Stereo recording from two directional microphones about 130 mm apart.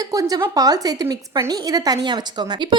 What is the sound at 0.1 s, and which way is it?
A woman's voice, 30° right (ahead or behind).